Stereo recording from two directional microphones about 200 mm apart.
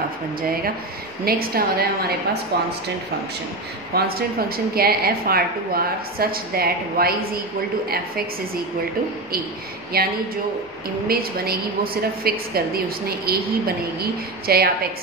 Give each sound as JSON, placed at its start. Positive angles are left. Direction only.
{"t": 1.2, "sound": "a woman's voice", "side_deg": -50}
{"t": 3.9, "sound": "a woman's voice", "side_deg": -50}
{"t": 9.9, "sound": "a woman's voice", "side_deg": -50}